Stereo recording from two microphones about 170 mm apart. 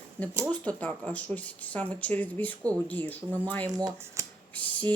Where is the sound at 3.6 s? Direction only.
20° right (ahead or behind).